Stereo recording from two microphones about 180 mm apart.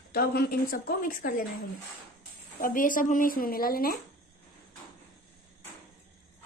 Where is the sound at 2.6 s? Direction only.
50° left (ahead or behind).